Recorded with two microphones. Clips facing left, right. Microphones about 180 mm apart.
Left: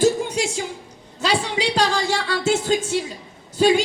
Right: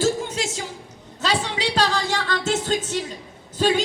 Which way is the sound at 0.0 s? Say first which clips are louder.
Left 4 dB; 10° left (ahead or behind).